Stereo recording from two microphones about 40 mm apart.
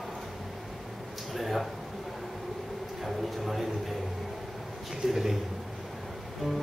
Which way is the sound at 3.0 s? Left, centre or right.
Centre.